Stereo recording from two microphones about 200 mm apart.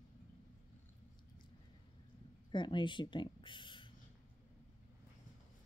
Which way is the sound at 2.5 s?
25° left (ahead or behind).